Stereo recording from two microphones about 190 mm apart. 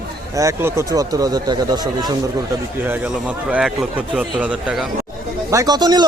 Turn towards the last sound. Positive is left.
turn(degrees=-20)  # may be behind; listen again after turning